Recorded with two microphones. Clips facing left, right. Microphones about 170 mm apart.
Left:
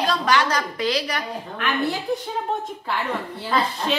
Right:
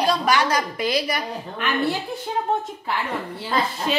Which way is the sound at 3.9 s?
5° right (ahead or behind).